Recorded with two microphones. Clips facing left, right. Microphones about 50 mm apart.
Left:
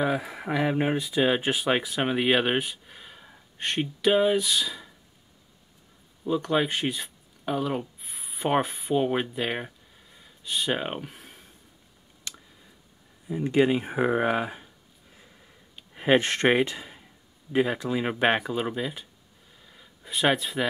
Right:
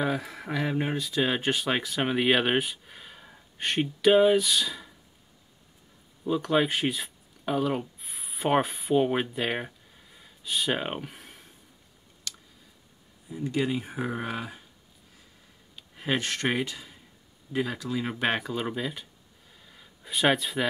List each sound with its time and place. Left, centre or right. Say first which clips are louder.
0.0 s speech: left 2 dB; centre
6.2 s speech: even; centre
12.3 s a sound: even; left
13.3 s speech: left 6 dB; left
15.9 s speech: left 7 dB; left
18.4 s speech: left 2 dB; centre
19.6 s a sound: left 1 dB; centre